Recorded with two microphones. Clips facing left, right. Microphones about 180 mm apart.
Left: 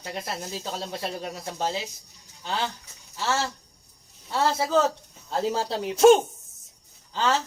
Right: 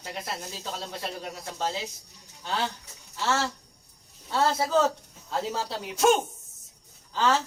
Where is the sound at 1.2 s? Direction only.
10° left (ahead or behind).